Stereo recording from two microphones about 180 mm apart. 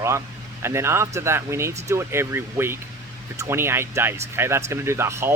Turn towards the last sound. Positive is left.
turn(degrees=-15)  # may be behind; listen again after turning